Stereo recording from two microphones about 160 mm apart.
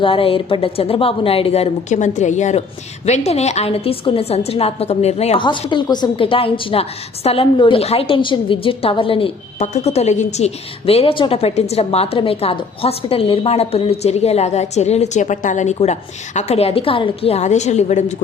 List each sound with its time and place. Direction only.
0.0 s a woman's voice: 35° left (ahead or behind)